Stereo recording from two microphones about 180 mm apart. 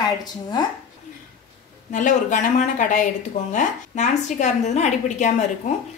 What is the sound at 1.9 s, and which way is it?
A woman's voice, 45° left (ahead or behind).